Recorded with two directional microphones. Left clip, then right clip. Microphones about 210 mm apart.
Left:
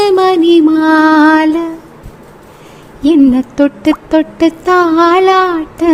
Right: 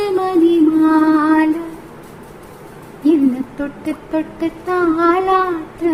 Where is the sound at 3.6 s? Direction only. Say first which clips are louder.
Left 13 dB; 40° left (ahead or behind).